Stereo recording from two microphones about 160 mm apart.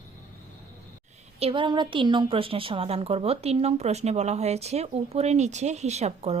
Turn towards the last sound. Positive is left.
turn(degrees=-40)  # may be behind; listen again after turning